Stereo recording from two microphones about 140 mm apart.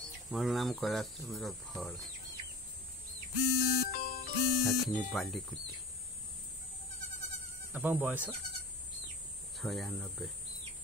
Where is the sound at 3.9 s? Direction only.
90° left.